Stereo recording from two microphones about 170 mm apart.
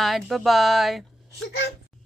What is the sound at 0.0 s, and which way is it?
A woman's voice, centre (ahead or behind).